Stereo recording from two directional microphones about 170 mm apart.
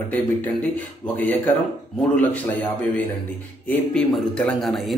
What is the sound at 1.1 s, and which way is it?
Speech, 10° left (ahead or behind).